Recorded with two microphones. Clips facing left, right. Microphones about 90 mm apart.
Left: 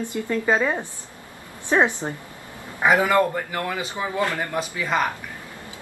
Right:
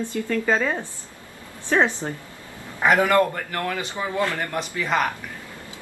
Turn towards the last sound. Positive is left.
turn(degrees=5)  # may be behind; listen again after turning